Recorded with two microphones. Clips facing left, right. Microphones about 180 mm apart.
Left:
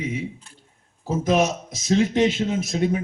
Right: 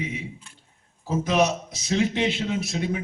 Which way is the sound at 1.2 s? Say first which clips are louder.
Left 2 dB; 45° left (ahead or behind).